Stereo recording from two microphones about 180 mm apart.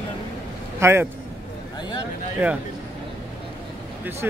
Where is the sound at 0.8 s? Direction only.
15° right (ahead or behind).